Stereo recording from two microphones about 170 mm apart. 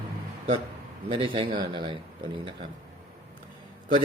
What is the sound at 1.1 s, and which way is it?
A man's voice, 30° right (ahead or behind).